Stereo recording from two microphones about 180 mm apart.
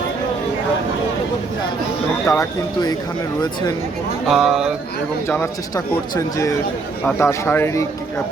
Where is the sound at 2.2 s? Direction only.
15° left (ahead or behind).